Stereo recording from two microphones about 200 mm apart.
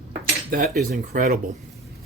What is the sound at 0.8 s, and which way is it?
Speech, 40° right (ahead or behind).